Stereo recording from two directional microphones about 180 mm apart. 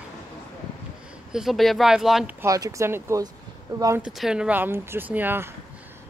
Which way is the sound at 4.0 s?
Centre (ahead or behind).